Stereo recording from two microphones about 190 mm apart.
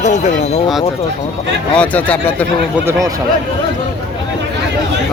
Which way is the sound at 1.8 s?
10° left (ahead or behind).